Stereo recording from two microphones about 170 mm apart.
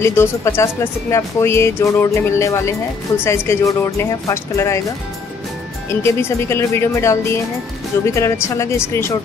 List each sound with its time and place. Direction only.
0.0 s speech: 15° left (ahead or behind)
5.9 s speech: 15° left (ahead or behind)